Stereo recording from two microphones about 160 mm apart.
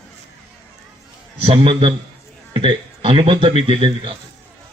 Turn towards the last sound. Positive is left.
turn(degrees=-35)  # may be behind; listen again after turning